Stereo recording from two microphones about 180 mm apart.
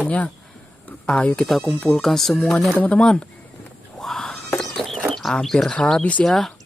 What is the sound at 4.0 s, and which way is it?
Whispering, centre (ahead or behind).